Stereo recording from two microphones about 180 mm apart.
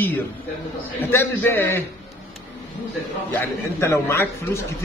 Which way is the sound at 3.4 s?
15° left (ahead or behind).